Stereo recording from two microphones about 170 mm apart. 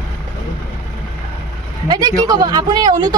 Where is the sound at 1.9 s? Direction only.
20° right (ahead or behind).